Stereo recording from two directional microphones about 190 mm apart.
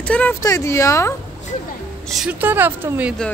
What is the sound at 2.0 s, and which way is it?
Speech, 5° right (ahead or behind).